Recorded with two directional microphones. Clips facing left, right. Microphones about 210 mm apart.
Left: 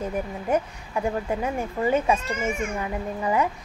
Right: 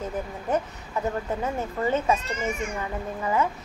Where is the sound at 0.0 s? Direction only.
10° left (ahead or behind).